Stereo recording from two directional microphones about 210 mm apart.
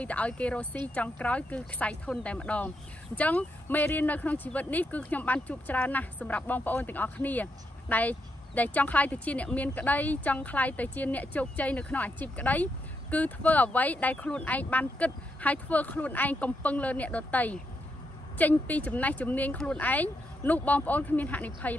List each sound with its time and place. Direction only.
0.0 s speech: 5° left (ahead or behind)